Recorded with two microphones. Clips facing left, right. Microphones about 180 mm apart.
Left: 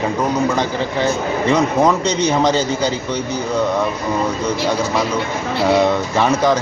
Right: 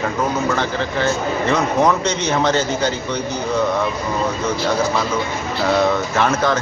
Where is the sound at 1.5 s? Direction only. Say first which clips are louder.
Left 2 dB; 10° left (ahead or behind).